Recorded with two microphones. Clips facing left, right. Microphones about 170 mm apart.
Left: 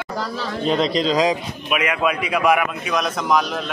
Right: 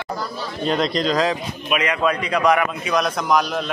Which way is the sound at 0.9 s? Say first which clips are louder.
Left 1 dB; 30° left (ahead or behind).